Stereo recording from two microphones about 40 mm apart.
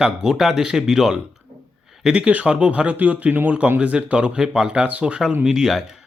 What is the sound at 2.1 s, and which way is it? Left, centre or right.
Speech, right.